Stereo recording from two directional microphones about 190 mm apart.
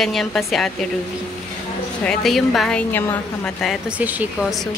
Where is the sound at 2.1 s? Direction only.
Centre (ahead or behind).